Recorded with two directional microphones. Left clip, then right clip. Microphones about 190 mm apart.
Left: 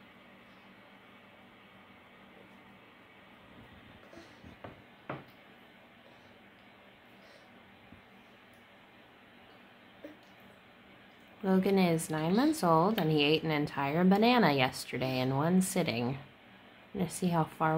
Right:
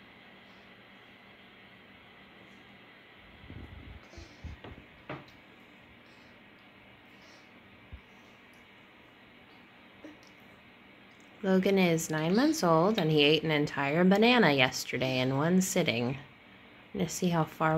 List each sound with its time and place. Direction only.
11.4 s speech: 10° right (ahead or behind)